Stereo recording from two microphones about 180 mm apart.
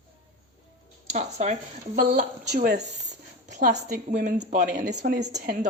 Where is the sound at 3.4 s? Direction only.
40° right (ahead or behind).